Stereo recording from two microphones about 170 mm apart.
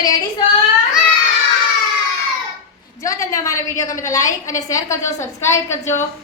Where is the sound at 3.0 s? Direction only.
20° left (ahead or behind).